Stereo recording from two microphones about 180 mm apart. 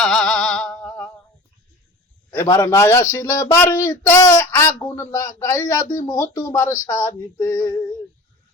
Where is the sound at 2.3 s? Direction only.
15° left (ahead or behind).